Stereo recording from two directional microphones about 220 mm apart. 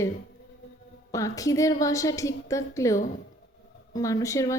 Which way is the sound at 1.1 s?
15° left (ahead or behind).